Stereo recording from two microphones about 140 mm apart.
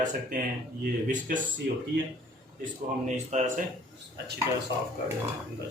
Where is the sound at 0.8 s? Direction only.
90° right.